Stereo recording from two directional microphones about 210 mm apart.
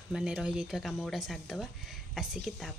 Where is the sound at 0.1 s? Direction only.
5° right (ahead or behind).